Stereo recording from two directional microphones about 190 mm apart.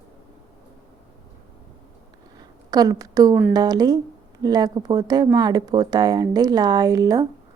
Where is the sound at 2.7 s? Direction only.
20° right (ahead or behind).